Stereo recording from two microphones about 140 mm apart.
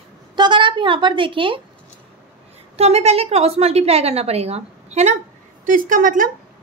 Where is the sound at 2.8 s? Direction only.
50° right (ahead or behind).